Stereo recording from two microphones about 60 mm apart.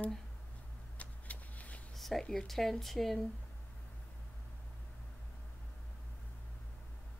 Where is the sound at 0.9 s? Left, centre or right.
Left.